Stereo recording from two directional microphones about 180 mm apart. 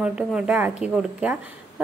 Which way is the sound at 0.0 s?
5° right (ahead or behind).